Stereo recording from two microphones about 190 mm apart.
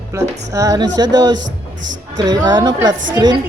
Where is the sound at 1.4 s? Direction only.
75° right (ahead or behind).